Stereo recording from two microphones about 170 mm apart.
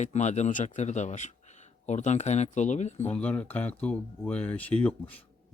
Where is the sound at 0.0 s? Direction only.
45° left (ahead or behind).